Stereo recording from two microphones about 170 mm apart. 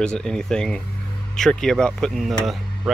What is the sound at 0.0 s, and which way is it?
Speech, 5° left (ahead or behind).